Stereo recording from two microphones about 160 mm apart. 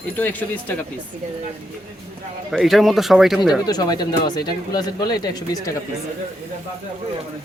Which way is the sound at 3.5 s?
25° left (ahead or behind).